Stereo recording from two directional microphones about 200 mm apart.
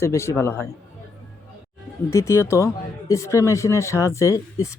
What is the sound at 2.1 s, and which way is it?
Speech, 15° left (ahead or behind).